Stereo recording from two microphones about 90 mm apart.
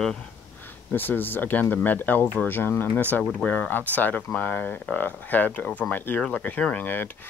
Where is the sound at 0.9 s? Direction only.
20° left (ahead or behind).